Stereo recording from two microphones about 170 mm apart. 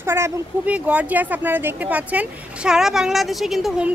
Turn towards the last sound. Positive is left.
turn(degrees=-5)  # may be behind; listen again after turning